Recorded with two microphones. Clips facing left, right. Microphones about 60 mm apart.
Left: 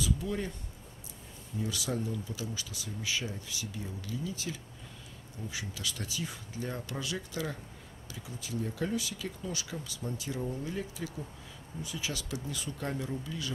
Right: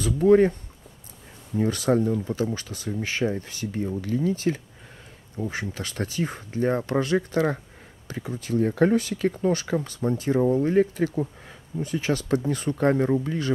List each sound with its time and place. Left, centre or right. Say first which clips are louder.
0.0 s speech: right 16 dB; right
1.6 s speech: right 13 dB; right